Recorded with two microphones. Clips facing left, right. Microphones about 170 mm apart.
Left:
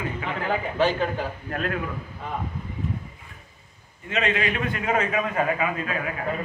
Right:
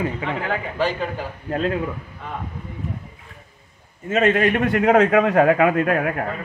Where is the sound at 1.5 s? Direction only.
25° right (ahead or behind).